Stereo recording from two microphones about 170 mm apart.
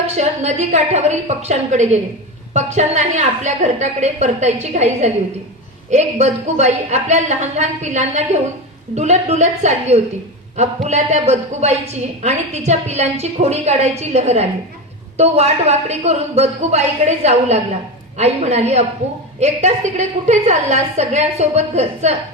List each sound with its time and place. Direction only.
0.2 s a woman's voice: 40° right (ahead or behind)